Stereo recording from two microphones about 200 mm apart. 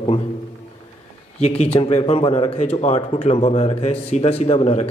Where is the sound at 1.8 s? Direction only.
35° left (ahead or behind).